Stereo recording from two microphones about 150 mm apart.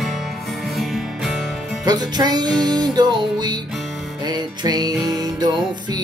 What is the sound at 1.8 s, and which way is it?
Music, 25° right (ahead or behind).